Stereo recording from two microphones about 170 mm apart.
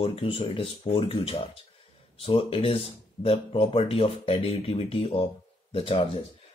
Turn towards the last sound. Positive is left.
turn(degrees=30)  # may be behind; listen again after turning